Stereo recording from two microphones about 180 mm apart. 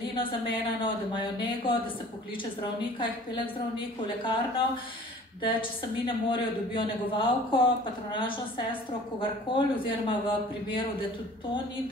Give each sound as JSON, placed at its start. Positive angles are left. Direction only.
{"t": 0.0, "sound": "a woman's voice", "side_deg": 30}
{"t": 2.8, "sound": "a woman's voice", "side_deg": 25}
{"t": 5.4, "sound": "a woman's voice", "side_deg": 30}